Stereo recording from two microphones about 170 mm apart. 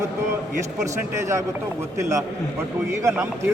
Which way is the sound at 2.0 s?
15° right (ahead or behind).